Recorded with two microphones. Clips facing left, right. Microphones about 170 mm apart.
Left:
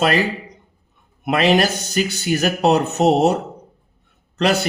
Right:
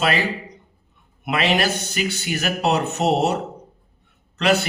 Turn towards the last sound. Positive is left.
turn(degrees=40)  # may be behind; listen again after turning